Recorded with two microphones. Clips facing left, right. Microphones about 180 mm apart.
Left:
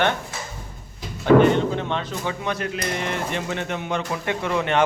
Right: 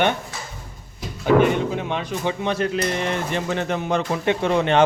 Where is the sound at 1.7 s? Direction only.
10° right (ahead or behind).